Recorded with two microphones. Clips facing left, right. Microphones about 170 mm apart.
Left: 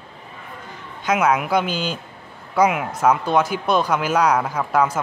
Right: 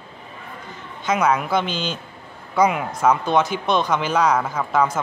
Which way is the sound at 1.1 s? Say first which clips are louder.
Left 1 dB; 10° left (ahead or behind).